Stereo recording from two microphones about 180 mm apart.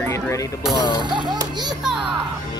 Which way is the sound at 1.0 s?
25° right (ahead or behind).